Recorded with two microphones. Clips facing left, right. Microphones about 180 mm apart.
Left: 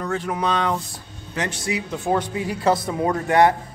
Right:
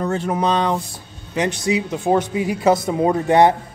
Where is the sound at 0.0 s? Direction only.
25° right (ahead or behind).